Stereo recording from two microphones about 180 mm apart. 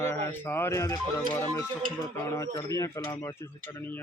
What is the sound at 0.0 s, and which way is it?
Speech, 15° left (ahead or behind).